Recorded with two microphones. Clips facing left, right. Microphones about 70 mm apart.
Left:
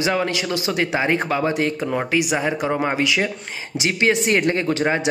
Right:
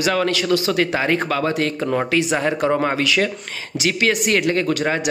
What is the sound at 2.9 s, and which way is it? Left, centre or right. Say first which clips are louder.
A man's voice: right 1 dB; centre.